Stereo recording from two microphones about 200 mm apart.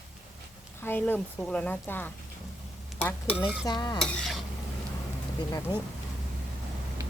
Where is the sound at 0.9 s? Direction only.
10° left (ahead or behind).